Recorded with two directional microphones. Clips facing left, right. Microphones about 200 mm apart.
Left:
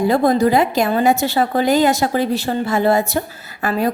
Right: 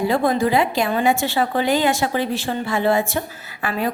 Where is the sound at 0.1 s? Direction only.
40° left (ahead or behind).